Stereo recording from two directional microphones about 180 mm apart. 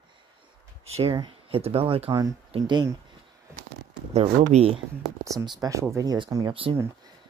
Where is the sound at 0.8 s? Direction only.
35° right (ahead or behind).